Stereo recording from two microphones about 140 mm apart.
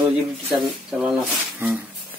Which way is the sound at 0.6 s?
5° right (ahead or behind).